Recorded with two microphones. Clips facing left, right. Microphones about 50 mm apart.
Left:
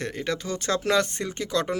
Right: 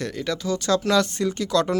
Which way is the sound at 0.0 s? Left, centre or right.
Left.